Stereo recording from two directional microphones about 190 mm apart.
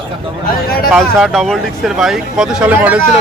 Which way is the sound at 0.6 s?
55° left (ahead or behind).